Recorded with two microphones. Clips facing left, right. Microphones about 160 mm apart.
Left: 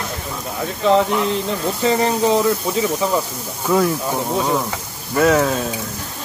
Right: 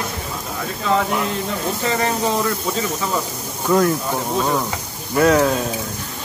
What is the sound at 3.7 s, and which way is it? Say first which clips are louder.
Speech: right 1 dB; centre (ahead or behind).